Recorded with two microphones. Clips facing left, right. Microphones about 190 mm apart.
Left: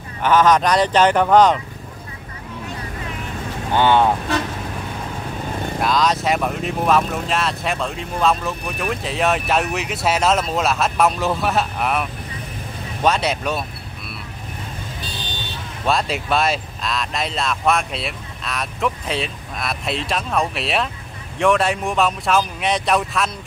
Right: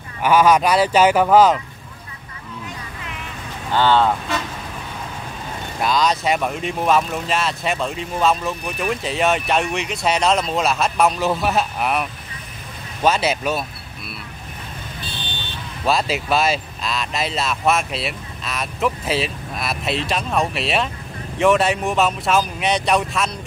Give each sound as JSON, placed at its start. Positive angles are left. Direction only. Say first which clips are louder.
{"t": 0.2, "sound": "speech", "louder": "even", "side_deg": -10}
{"t": 3.7, "sound": "speech", "louder": "left 1 dB", "side_deg": 15}
{"t": 5.8, "sound": "speech", "louder": "even", "side_deg": 0}
{"t": 15.8, "sound": "speech", "louder": "right 1 dB", "side_deg": 0}